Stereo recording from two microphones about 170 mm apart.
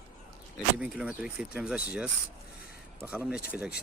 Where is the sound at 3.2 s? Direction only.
5° right (ahead or behind).